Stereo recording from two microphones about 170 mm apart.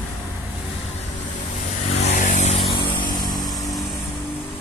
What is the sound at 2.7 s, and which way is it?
Vehicle, 30° left (ahead or behind).